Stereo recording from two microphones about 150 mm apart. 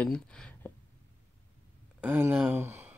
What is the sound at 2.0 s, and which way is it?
Speech, 15° right (ahead or behind).